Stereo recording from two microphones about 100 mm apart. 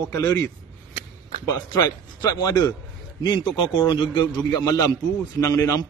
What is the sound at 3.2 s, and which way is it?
A man's voice, 50° left (ahead or behind).